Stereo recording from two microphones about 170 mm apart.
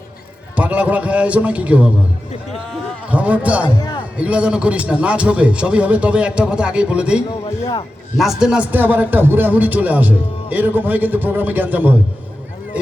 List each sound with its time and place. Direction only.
0.5 s speech: 10° right (ahead or behind)
3.1 s speech: 10° right (ahead or behind)
3.8 s speech: 25° left (ahead or behind)
4.2 s speech: 5° right (ahead or behind)
7.6 s a man's voice: 25° left (ahead or behind)
8.2 s speech: 5° right (ahead or behind)